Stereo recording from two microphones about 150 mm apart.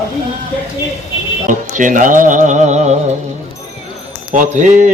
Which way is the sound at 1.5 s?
60° right (ahead or behind).